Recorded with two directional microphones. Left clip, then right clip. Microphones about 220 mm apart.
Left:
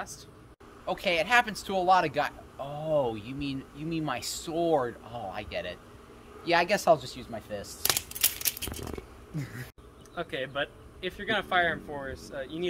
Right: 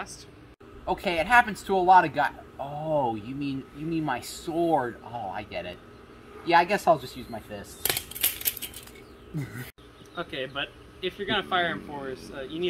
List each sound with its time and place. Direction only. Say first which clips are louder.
0.8 s speech: right 1 dB; 20° left (ahead or behind)
7.8 s a sound: even; 10° left (ahead or behind)
10.1 s speech: even; 30° left (ahead or behind)